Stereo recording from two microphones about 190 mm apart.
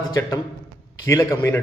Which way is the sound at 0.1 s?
20° left (ahead or behind).